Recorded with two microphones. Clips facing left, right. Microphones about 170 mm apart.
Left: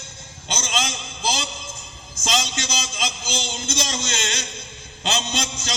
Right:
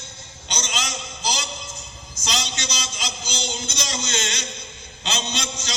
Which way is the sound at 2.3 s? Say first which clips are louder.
Left 4 dB; 45° left (ahead or behind).